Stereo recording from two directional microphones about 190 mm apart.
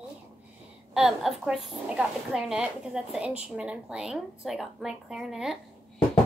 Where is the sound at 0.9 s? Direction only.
Centre (ahead or behind).